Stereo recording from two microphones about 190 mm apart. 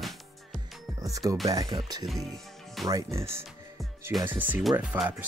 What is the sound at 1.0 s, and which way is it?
Speech, 15° right (ahead or behind).